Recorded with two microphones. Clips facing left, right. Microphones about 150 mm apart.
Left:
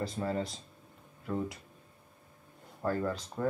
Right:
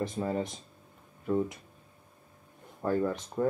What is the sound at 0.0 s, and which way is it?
Speech, 20° right (ahead or behind).